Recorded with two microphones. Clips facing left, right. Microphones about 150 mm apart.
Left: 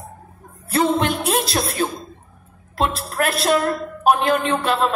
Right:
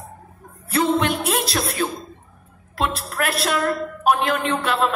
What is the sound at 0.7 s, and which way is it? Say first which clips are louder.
Speech: left 1 dB; 30° left (ahead or behind).